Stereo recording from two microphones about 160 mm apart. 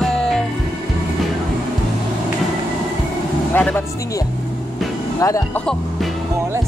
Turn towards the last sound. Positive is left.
turn(degrees=20)  # may be behind; listen again after turning